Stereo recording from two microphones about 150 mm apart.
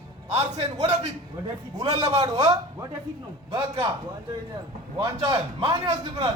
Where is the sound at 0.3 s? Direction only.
45° right (ahead or behind).